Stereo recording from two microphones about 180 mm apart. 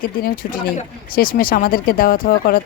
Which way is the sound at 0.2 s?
55° left (ahead or behind).